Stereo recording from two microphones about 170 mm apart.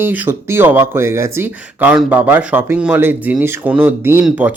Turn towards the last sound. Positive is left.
turn(degrees=-10)  # may be behind; listen again after turning